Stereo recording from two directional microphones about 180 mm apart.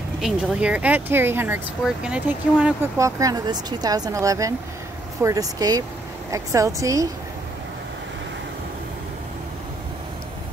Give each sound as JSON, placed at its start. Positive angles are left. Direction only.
{"t": 0.2, "sound": "speech", "side_deg": -5}